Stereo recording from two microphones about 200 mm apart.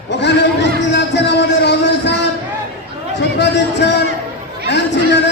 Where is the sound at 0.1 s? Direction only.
60° left (ahead or behind).